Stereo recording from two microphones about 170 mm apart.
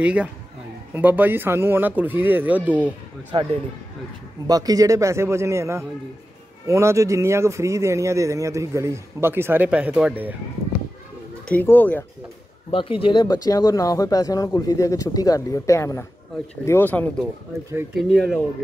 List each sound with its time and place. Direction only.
0.0 s speech: 5° right (ahead or behind)
3.3 s speech: 30° right (ahead or behind); by 10.3 s 10° right (ahead or behind)
11.4 s speech: 10° left (ahead or behind)
12.7 s speech: 30° left (ahead or behind); by 18.4 s 5° left (ahead or behind)